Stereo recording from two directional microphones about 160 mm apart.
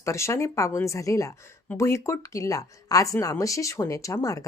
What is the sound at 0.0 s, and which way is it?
A woman's voice, 20° left (ahead or behind).